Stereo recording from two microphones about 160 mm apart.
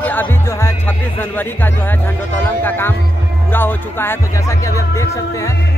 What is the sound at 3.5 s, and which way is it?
Speech, 15° left (ahead or behind).